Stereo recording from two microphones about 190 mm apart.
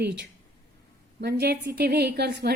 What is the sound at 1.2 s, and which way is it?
A woman's voice, 60° right (ahead or behind).